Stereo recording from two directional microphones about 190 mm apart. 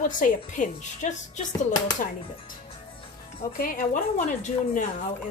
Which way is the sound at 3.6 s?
45° left (ahead or behind).